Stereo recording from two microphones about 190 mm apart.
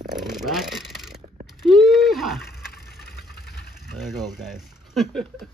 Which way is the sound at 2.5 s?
55° left (ahead or behind).